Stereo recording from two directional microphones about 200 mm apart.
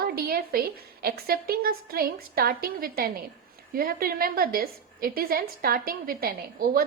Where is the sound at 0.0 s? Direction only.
50° right (ahead or behind).